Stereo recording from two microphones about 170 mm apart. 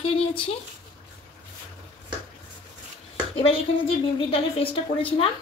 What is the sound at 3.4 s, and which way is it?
A woman's voice, 35° left (ahead or behind).